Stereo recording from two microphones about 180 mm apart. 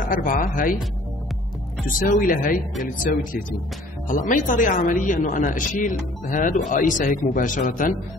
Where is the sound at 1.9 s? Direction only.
50° left (ahead or behind).